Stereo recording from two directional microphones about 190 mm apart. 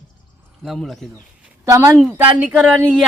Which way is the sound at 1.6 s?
15° right (ahead or behind).